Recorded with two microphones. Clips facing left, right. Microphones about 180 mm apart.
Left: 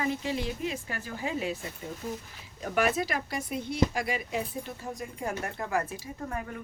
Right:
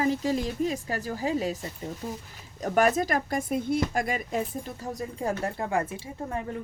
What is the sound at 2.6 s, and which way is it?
Speech, 45° right (ahead or behind).